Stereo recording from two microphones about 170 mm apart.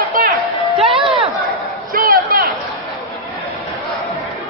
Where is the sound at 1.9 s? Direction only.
55° right (ahead or behind).